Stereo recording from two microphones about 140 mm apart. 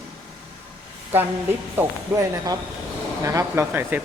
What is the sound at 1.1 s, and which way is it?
Speech, 15° right (ahead or behind).